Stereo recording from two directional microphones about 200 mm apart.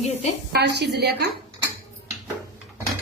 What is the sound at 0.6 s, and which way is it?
Speech, 55° right (ahead or behind).